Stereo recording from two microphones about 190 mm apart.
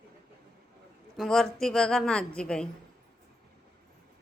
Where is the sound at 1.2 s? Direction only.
Centre (ahead or behind).